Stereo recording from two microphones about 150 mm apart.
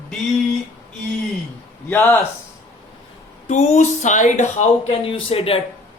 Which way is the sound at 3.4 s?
50° left (ahead or behind).